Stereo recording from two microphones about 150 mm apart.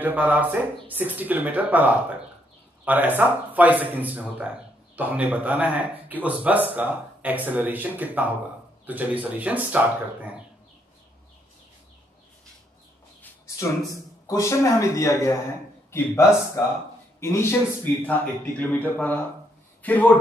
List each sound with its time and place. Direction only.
0.0 s speech: 10° right (ahead or behind)
14.2 s a man's voice: 20° left (ahead or behind)